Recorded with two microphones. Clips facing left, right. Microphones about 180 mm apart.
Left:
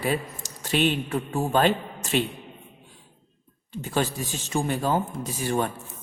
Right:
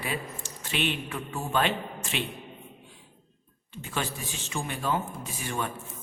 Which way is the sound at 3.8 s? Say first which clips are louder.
Left 7 dB; 40° left (ahead or behind).